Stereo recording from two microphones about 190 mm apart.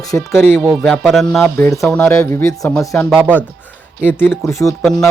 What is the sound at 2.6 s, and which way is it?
Speech, centre (ahead or behind).